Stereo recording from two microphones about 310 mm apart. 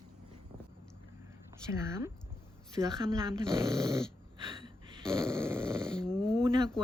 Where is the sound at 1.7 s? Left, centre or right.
Centre.